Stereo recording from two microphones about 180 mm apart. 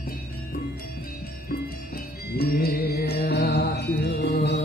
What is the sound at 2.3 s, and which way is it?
Mantra, 60° left (ahead or behind).